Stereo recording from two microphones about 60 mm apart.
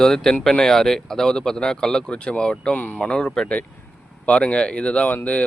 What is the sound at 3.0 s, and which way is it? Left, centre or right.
Speech, centre.